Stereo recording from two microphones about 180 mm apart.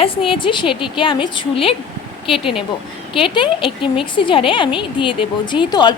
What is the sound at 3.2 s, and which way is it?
A woman's voice, 30° left (ahead or behind).